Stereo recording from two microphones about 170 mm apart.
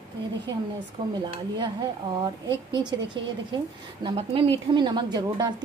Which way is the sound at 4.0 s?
30° right (ahead or behind).